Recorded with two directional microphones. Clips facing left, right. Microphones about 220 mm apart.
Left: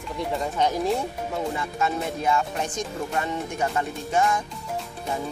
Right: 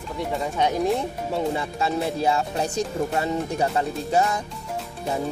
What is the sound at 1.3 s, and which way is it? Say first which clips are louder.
Speech: right 5 dB; 30° right (ahead or behind).